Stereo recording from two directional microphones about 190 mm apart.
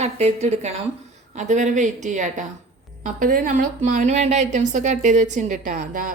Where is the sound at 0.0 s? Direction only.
35° right (ahead or behind).